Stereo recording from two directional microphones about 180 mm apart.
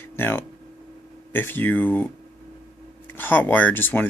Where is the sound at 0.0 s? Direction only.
15° left (ahead or behind).